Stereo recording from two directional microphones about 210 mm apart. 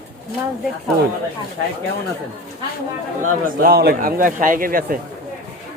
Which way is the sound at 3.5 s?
45° right (ahead or behind).